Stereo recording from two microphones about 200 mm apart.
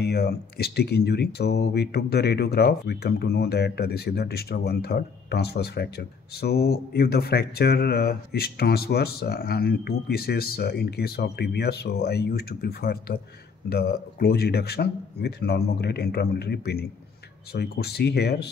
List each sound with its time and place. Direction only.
0.0 s speech: 55° left (ahead or behind)